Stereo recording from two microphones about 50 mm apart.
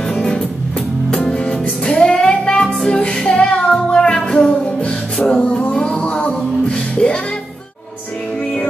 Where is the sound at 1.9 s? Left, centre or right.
Centre.